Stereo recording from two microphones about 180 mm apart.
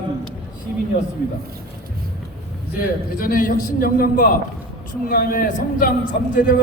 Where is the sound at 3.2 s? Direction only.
50° left (ahead or behind).